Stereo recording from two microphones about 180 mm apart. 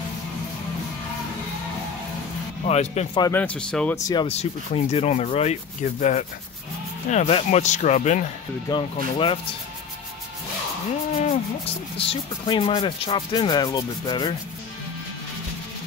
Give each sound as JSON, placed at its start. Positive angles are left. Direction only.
{"t": 2.6, "sound": "speech", "side_deg": 40}
{"t": 3.2, "sound": "speech", "side_deg": 15}
{"t": 3.9, "sound": "speech", "side_deg": 25}
{"t": 4.3, "sound": "speech", "side_deg": 35}
{"t": 8.6, "sound": "speech", "side_deg": 25}
{"t": 12.1, "sound": "speech", "side_deg": 30}